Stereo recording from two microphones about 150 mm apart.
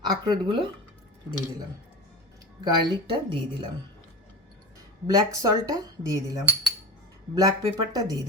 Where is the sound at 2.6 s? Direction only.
30° right (ahead or behind).